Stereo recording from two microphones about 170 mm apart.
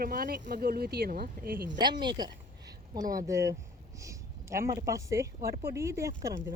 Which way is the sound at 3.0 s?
55° right (ahead or behind).